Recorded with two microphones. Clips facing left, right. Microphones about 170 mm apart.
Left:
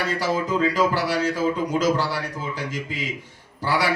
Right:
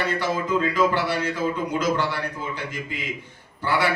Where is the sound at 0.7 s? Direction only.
40° left (ahead or behind).